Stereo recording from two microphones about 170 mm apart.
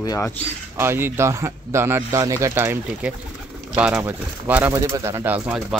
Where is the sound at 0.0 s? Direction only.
20° left (ahead or behind).